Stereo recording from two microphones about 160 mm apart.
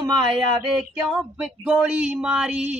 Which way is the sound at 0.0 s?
25° right (ahead or behind).